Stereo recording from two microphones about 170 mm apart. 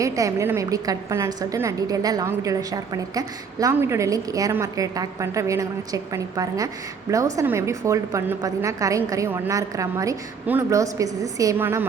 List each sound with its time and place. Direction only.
0.0 s a woman's voice: 20° right (ahead or behind)